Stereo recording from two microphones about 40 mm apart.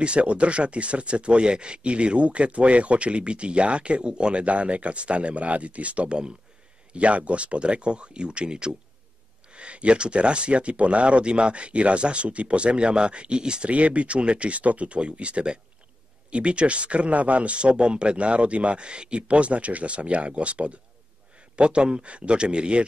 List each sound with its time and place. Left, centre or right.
0.0 s speech: right
13.7 s speech: right